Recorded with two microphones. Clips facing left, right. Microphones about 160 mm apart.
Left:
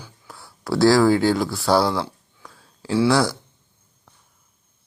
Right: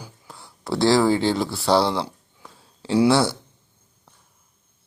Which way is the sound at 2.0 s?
Centre (ahead or behind).